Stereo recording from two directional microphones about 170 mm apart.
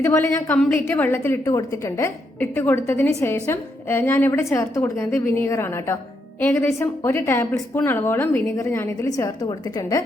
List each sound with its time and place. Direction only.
0.0 s a woman's voice: 15° left (ahead or behind)